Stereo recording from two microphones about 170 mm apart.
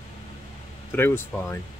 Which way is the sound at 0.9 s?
10° left (ahead or behind).